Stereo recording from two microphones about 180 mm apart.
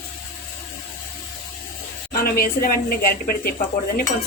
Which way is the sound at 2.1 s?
55° left (ahead or behind).